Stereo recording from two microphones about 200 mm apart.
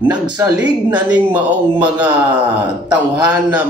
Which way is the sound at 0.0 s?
10° right (ahead or behind).